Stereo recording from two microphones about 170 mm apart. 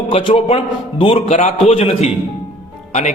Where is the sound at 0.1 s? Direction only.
30° left (ahead or behind).